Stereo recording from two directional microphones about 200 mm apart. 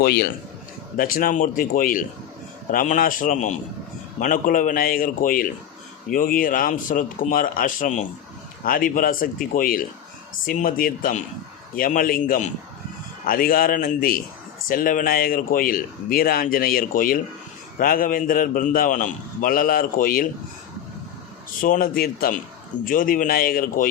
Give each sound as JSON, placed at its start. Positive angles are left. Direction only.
{"t": 0.0, "sound": "a man's voice", "side_deg": 50}
{"t": 21.6, "sound": "speech", "side_deg": 45}